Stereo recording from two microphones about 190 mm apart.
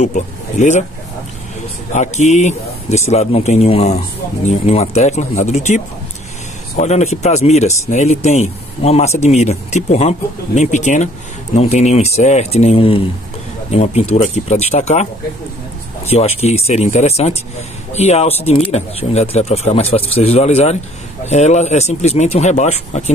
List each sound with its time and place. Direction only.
0.0 s speech: 40° left (ahead or behind)
1.9 s a man's voice: 40° left (ahead or behind)
6.8 s a man's voice: 35° left (ahead or behind)
16.1 s a man's voice: 35° left (ahead or behind)